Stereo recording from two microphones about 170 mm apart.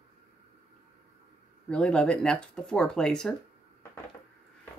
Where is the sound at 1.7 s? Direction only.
5° left (ahead or behind).